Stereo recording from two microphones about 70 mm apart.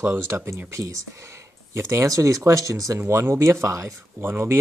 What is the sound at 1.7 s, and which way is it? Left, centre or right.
Speech, right.